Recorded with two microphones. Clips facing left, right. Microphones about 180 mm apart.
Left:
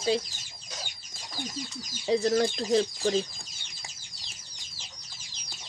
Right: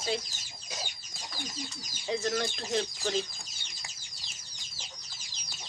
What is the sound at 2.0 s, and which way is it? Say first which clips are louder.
Speech: left 7 dB; 35° left (ahead or behind).